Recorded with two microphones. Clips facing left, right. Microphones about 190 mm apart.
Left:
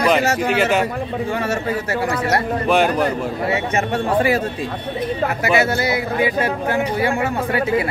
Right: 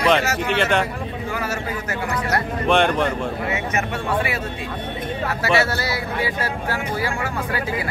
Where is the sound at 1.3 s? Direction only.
30° left (ahead or behind).